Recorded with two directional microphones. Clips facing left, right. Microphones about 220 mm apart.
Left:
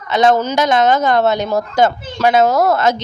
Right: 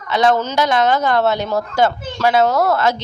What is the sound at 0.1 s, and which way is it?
A woman's voice, 20° left (ahead or behind).